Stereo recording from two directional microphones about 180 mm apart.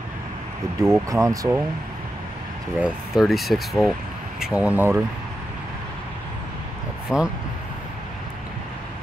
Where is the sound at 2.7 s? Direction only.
5° right (ahead or behind).